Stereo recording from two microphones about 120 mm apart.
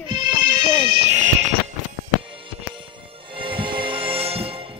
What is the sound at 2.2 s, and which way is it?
Music, 45° right (ahead or behind).